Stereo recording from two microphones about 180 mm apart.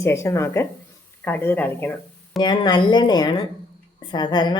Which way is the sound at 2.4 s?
25° left (ahead or behind).